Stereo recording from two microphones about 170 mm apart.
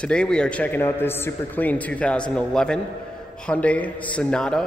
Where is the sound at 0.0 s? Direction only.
5° left (ahead or behind).